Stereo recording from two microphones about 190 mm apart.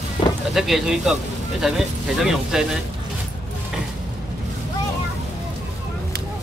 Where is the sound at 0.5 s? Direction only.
Centre (ahead or behind).